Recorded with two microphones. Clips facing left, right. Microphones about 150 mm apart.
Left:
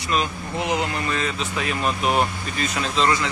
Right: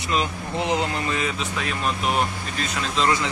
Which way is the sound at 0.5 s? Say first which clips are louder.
Right 1 dB; 10° left (ahead or behind).